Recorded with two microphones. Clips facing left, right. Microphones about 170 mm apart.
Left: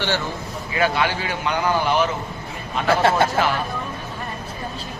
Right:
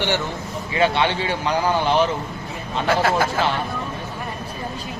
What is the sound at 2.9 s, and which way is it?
Speech, 30° left (ahead or behind).